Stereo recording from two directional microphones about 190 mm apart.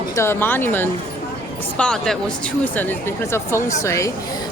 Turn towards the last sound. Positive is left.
turn(degrees=15)  # may be behind; listen again after turning